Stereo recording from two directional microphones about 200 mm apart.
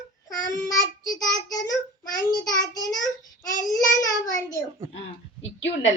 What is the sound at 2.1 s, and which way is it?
Speech, 20° left (ahead or behind).